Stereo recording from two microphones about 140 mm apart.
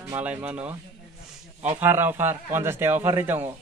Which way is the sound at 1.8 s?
15° right (ahead or behind).